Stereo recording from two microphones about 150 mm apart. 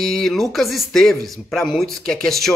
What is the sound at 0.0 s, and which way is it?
Speech, 5° left (ahead or behind).